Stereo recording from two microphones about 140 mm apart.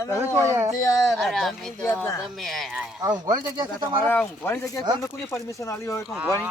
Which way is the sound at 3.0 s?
30° right (ahead or behind).